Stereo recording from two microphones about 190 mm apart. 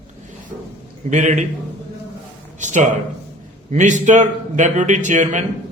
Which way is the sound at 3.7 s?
40° right (ahead or behind).